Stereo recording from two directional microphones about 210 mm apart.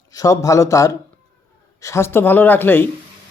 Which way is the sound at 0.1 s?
15° left (ahead or behind).